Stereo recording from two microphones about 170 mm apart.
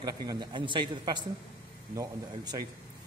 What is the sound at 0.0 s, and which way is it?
A man's voice, 25° right (ahead or behind).